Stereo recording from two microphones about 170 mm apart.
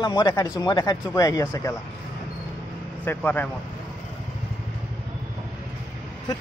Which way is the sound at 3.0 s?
10° left (ahead or behind).